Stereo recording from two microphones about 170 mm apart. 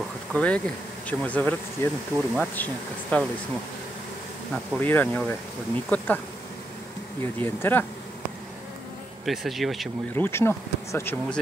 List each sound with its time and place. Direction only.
0.3 s speech: 5° left (ahead or behind)
4.7 s speech: 10° left (ahead or behind)
7.3 s speech: 10° left (ahead or behind)
9.2 s speech: centre (ahead or behind)
10.1 s speech: 15° left (ahead or behind)